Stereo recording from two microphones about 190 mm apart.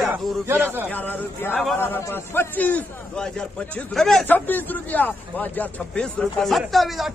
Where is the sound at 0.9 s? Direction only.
10° left (ahead or behind).